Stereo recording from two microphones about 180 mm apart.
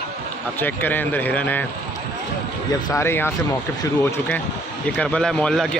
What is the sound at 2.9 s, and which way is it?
Speech, 15° left (ahead or behind).